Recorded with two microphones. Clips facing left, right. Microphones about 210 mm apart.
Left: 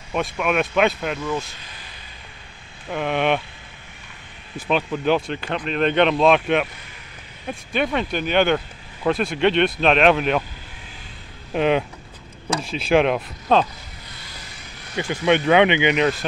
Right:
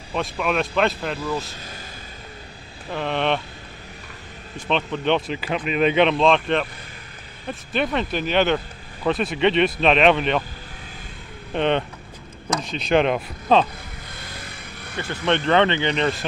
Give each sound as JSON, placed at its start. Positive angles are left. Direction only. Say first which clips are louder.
{"t": 0.1, "sound": "speech", "louder": "left 2 dB", "side_deg": 5}
{"t": 2.9, "sound": "speech", "louder": "left 2 dB", "side_deg": 10}
{"t": 4.6, "sound": "speech", "louder": "left 2 dB", "side_deg": 5}
{"t": 11.5, "sound": "speech", "louder": "left 2 dB", "side_deg": 5}
{"t": 14.1, "sound": "vehicle", "louder": "right 5 dB", "side_deg": -55}
{"t": 15.0, "sound": "speech", "louder": "left 3 dB", "side_deg": 10}